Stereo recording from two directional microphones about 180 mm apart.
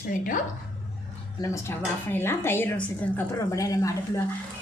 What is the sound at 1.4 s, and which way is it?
A woman's voice, 15° left (ahead or behind).